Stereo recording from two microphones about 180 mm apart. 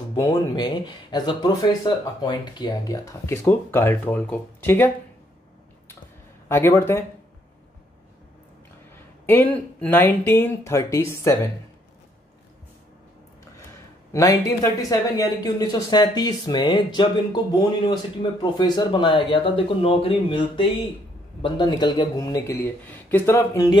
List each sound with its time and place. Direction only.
0.1 s speech: 20° left (ahead or behind)
6.5 s speech: 15° left (ahead or behind)
8.9 s speech: 10° left (ahead or behind)
14.1 s speech: 20° left (ahead or behind)